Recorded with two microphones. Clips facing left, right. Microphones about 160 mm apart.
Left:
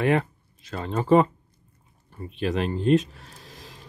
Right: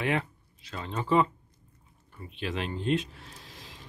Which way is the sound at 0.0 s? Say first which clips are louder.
Left 7 dB; 45° left (ahead or behind).